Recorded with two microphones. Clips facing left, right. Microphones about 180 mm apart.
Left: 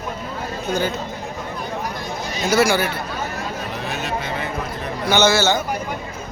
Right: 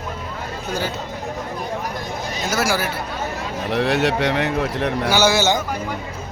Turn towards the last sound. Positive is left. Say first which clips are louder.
# even
turn(degrees=-15)  # may be behind; listen again after turning